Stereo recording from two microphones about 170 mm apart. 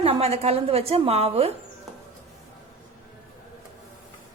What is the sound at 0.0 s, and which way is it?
A woman's voice, 35° right (ahead or behind).